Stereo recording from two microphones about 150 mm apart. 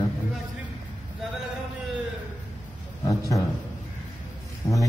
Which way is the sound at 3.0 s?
20° left (ahead or behind).